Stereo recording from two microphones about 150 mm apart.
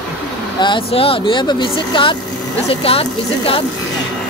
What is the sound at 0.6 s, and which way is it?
Speech, 35° left (ahead or behind).